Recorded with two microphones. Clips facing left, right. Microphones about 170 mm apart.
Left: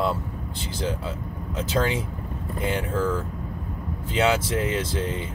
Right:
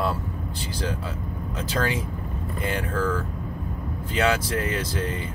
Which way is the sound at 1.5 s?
20° left (ahead or behind).